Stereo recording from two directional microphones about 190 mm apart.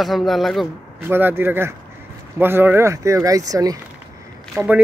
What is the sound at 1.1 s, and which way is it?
Speech, 10° right (ahead or behind).